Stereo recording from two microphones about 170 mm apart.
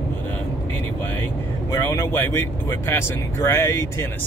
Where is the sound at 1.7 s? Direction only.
15° left (ahead or behind).